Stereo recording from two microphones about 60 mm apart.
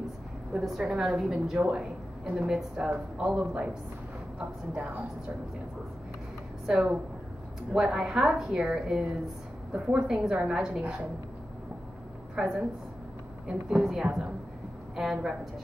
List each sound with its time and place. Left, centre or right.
0.6 s a woman's voice: centre
6.6 s a woman's voice: centre
12.4 s a woman's voice: centre
13.7 s a woman's voice: centre